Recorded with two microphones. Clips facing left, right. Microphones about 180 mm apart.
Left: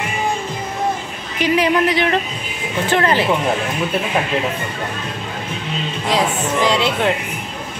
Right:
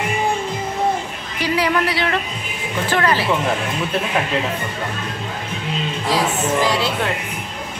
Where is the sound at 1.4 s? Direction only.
20° left (ahead or behind).